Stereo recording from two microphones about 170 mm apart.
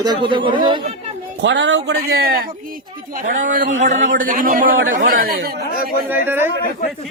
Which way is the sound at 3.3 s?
50° right (ahead or behind).